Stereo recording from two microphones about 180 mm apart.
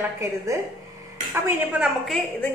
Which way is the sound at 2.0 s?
Centre (ahead or behind).